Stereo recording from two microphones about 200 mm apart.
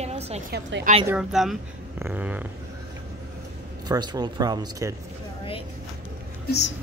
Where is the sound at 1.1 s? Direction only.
Centre (ahead or behind).